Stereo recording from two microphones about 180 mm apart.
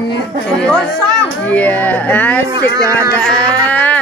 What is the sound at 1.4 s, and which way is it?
Snicker, 10° left (ahead or behind).